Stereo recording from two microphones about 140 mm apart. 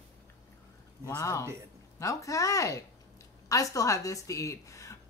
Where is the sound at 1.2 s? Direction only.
20° left (ahead or behind).